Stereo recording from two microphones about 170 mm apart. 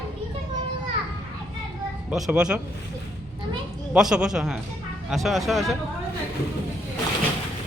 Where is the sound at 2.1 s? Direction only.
5° right (ahead or behind).